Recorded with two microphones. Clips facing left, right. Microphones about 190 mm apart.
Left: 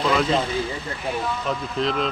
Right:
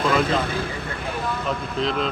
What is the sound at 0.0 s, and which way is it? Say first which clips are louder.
Speech: even; 55° right (ahead or behind).